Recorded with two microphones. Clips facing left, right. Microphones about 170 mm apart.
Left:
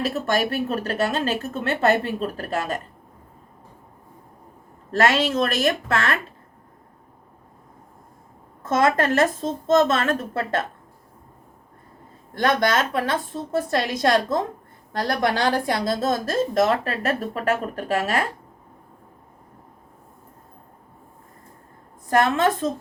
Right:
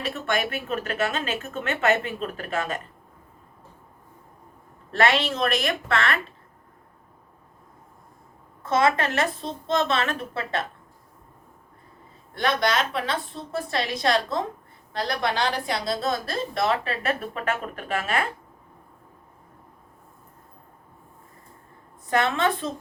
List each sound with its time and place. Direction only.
0.0 s a woman's voice: 40° left (ahead or behind)
4.9 s a woman's voice: 40° left (ahead or behind)
8.6 s a woman's voice: 50° left (ahead or behind)
12.4 s a woman's voice: 50° left (ahead or behind)
22.1 s a woman's voice: 45° left (ahead or behind)